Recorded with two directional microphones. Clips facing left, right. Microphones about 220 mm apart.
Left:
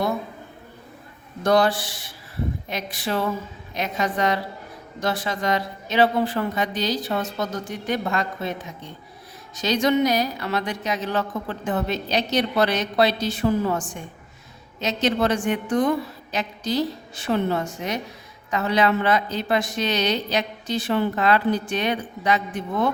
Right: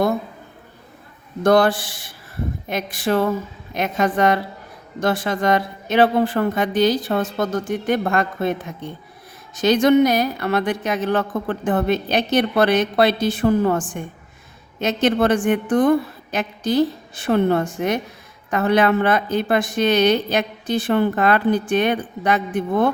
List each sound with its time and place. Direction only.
1.5 s speech: 50° right (ahead or behind)